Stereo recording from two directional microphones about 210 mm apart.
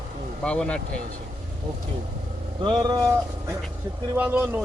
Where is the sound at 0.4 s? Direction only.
5° left (ahead or behind).